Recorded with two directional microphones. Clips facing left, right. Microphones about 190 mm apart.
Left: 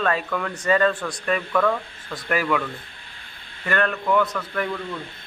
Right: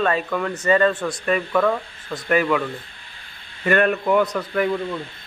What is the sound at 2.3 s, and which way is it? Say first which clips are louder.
Speech: right 4 dB; centre (ahead or behind).